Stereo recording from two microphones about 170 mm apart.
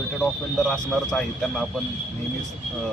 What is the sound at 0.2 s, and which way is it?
Speech, 5° left (ahead or behind).